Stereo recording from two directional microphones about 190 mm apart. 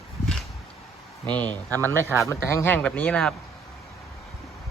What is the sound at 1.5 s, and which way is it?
Speech, 15° right (ahead or behind).